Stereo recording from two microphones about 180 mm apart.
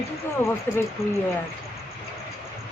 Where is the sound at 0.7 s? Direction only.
10° left (ahead or behind).